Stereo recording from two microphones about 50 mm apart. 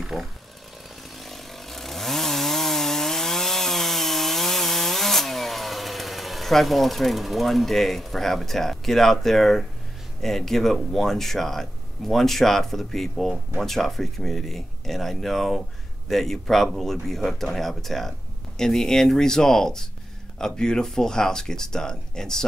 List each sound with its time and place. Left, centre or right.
0.0 s speech: centre
1.1 s chainsaw: centre
10.2 s speech: centre